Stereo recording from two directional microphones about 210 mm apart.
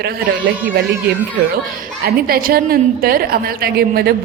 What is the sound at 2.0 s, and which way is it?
A woman's voice, 45° right (ahead or behind).